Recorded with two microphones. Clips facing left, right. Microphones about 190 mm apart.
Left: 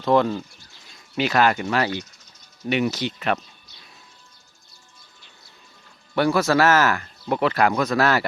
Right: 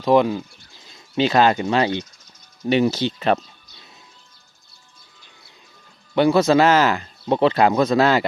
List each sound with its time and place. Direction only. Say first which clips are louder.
0.0 s speech: right 3 dB; 15° right (ahead or behind)
0.9 s speech: right 4 dB; 25° right (ahead or behind)
6.1 s speech: right 4 dB; 20° right (ahead or behind)